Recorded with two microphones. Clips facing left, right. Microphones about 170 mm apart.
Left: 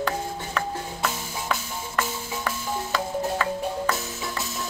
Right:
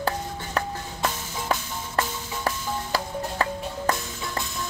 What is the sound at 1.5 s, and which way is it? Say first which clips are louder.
Music: right 3 dB; 30° right (ahead or behind).